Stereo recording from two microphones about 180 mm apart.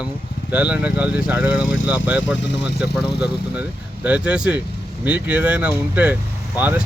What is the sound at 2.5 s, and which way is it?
Speech, 65° left (ahead or behind).